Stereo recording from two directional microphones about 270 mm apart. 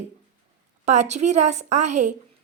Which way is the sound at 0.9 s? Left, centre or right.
Right.